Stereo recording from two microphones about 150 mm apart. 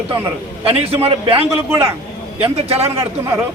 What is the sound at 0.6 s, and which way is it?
Speech, 40° right (ahead or behind).